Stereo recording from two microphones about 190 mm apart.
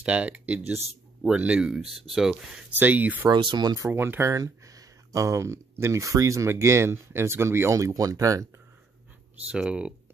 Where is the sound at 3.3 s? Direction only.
25° right (ahead or behind).